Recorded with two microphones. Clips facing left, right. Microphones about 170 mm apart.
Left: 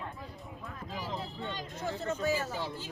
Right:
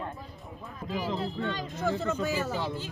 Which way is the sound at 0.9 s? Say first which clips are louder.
Right 8 dB; 75° right (ahead or behind).